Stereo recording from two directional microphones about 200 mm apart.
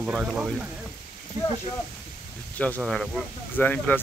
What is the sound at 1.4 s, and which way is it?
Speech, 20° right (ahead or behind).